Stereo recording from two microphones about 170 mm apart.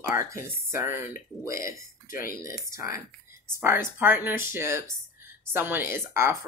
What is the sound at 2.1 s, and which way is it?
Speech, 55° left (ahead or behind).